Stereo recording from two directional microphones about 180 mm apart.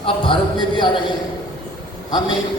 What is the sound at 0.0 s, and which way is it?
Speech, 25° left (ahead or behind).